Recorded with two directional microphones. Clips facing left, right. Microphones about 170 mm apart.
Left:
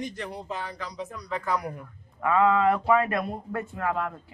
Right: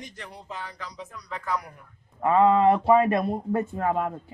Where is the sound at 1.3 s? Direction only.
5° left (ahead or behind).